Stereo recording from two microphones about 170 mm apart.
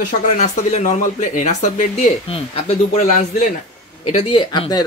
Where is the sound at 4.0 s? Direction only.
35° left (ahead or behind).